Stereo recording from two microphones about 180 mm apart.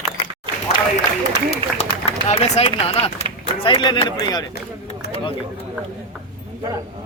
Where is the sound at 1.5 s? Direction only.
35° left (ahead or behind).